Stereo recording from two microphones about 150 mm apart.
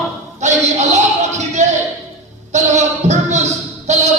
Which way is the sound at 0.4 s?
55° right (ahead or behind).